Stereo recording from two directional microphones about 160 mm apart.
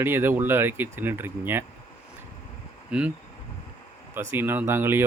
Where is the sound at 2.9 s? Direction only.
5° right (ahead or behind).